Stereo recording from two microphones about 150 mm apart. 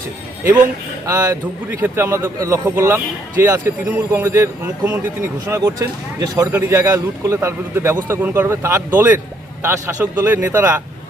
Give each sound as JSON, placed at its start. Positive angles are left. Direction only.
{"t": 1.0, "sound": "a man's voice", "side_deg": -20}